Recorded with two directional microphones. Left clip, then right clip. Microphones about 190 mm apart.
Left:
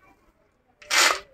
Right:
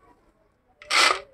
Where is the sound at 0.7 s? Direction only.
25° right (ahead or behind).